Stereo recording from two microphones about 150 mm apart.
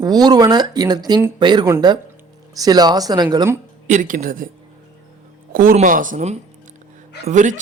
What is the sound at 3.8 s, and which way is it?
Speech, 60° right (ahead or behind).